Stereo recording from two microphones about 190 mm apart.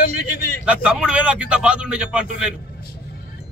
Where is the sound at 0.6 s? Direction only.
5° right (ahead or behind).